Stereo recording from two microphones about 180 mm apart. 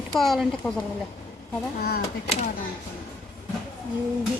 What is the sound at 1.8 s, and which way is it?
Speech, 60° left (ahead or behind).